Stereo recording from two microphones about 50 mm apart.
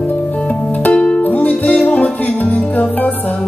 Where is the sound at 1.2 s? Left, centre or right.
Left.